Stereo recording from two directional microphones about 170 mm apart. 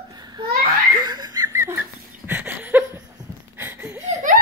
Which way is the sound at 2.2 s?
10° right (ahead or behind).